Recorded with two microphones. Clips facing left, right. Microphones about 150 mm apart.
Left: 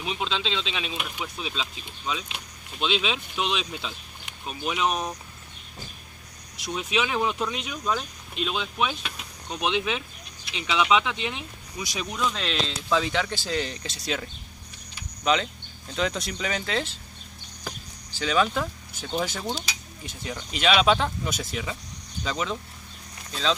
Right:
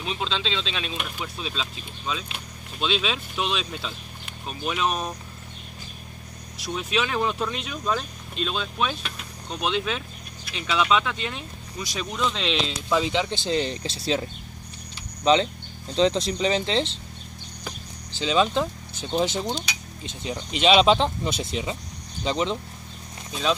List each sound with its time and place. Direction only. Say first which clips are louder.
0.0 s speech: even; 10° left (ahead or behind)
6.6 s speech: right 1 dB; 15° left (ahead or behind)
12.9 s speech: right 2 dB; 15° right (ahead or behind)
15.3 s speech: right 5 dB; 30° right (ahead or behind)
18.2 s speech: right 2 dB; 25° right (ahead or behind)